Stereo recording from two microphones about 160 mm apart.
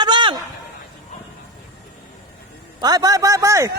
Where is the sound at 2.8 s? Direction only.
25° right (ahead or behind).